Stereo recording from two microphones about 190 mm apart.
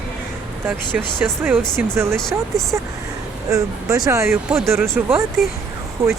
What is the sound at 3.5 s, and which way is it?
Speech, 15° right (ahead or behind).